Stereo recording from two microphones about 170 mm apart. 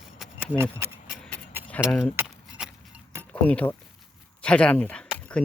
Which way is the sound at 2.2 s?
5° right (ahead or behind).